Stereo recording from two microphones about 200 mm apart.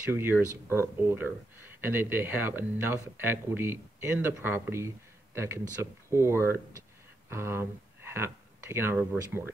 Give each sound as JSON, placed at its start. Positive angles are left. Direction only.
{"t": 0.1, "sound": "speech", "side_deg": -10}